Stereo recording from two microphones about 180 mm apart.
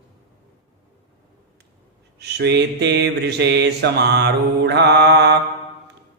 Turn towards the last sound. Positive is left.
turn(degrees=-70)  # may be behind; listen again after turning